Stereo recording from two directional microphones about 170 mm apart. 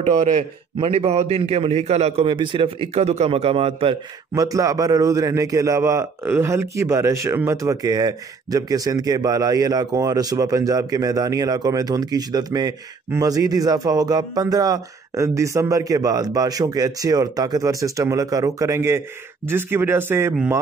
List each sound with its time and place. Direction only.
0.7 s a man's voice: 35° right (ahead or behind)
4.3 s speech: 20° right (ahead or behind)